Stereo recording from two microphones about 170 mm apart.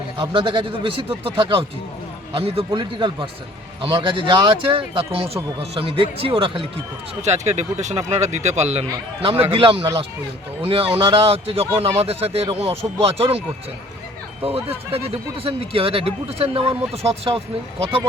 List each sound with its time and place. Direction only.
0.2 s speech: 30° right (ahead or behind)
7.2 s speech: 40° right (ahead or behind)
14.9 s speech: 35° right (ahead or behind)